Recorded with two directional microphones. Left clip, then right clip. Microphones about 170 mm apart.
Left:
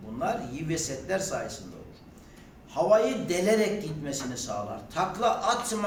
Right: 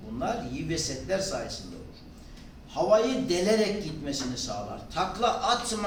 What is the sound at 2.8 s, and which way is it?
Speech, 15° left (ahead or behind).